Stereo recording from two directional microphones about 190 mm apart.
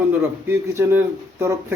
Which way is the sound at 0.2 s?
15° right (ahead or behind).